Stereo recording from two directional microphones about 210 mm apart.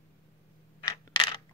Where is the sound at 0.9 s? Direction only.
25° left (ahead or behind).